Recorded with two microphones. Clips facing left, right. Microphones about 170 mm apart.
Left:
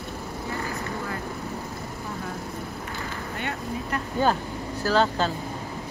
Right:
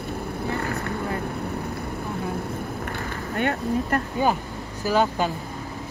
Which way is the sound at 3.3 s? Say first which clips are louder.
Right 9 dB; 55° right (ahead or behind).